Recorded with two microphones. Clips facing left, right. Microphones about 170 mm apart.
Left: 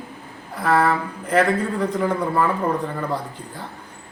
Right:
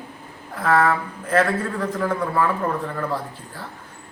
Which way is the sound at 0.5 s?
10° left (ahead or behind).